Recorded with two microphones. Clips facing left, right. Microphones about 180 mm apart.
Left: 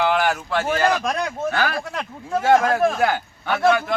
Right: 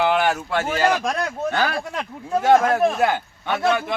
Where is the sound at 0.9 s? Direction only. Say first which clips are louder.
Even; 10° right (ahead or behind).